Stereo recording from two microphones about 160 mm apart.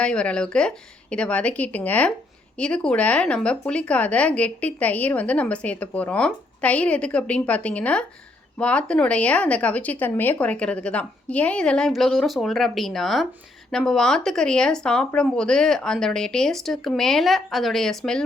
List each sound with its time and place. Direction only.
0.0 s speech: 5° left (ahead or behind)